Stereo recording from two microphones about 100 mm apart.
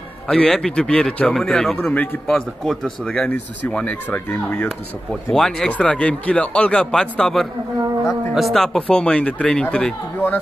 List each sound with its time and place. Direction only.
0.3 s speech: 5° left (ahead or behind)
3.7 s speech: 15° left (ahead or behind)
4.6 s speech: centre (ahead or behind)